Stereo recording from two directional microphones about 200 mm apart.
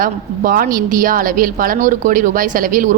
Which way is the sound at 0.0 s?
45° right (ahead or behind).